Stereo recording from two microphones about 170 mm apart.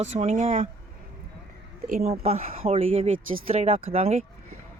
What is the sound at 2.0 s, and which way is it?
Speech, 40° right (ahead or behind).